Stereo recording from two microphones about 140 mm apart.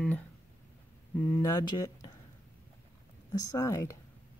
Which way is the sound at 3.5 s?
20° left (ahead or behind).